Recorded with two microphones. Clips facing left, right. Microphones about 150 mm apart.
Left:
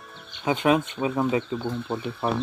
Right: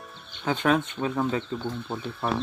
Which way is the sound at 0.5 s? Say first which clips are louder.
Left 2 dB; 10° left (ahead or behind).